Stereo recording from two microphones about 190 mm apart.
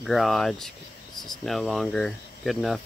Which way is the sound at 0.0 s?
Centre (ahead or behind).